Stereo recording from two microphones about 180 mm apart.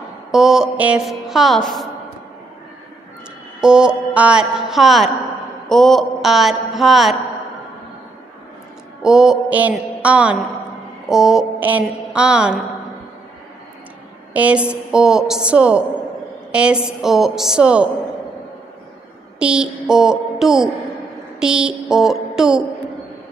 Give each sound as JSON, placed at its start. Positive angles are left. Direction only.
{"t": 0.3, "sound": "a woman's voice", "side_deg": -5}
{"t": 3.6, "sound": "speech", "side_deg": -5}
{"t": 9.0, "sound": "mantra", "side_deg": -5}
{"t": 11.1, "sound": "speech", "side_deg": 0}
{"t": 14.3, "sound": "speech", "side_deg": -5}
{"t": 19.4, "sound": "speech", "side_deg": -5}
{"t": 21.4, "sound": "a sound", "side_deg": -5}